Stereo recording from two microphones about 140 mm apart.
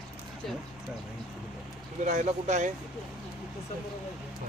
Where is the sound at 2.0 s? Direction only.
60° right (ahead or behind).